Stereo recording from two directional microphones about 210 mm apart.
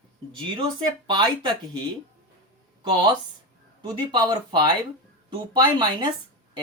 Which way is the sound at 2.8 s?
20° right (ahead or behind).